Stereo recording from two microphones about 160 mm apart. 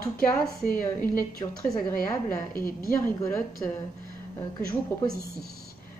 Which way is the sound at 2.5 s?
65° left (ahead or behind).